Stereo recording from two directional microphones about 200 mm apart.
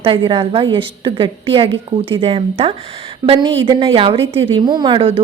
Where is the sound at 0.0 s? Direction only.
25° right (ahead or behind).